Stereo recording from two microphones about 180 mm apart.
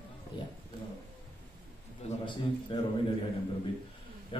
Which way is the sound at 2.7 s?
30° left (ahead or behind).